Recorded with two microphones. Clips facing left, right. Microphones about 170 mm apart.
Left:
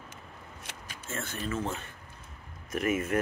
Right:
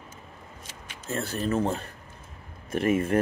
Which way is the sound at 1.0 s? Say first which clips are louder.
Right 7 dB; 35° right (ahead or behind).